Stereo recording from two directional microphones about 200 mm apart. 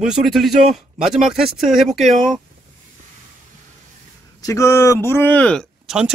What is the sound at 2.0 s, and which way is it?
Speech, 40° right (ahead or behind).